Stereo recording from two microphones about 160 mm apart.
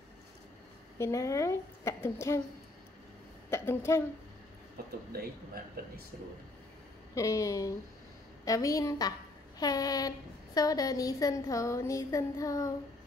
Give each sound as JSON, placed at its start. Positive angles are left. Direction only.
{"t": 0.9, "sound": "a woman's voice", "side_deg": 20}
{"t": 3.4, "sound": "a woman's voice", "side_deg": 15}
{"t": 5.1, "sound": "a man's voice", "side_deg": -70}
{"t": 7.2, "sound": "a woman's voice", "side_deg": 20}